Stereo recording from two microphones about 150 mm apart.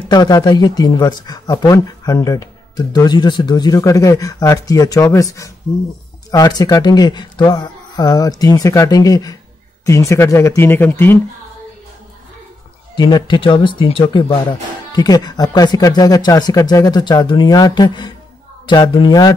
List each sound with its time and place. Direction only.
0.1 s speech: 25° left (ahead or behind)
12.9 s speech: 30° left (ahead or behind)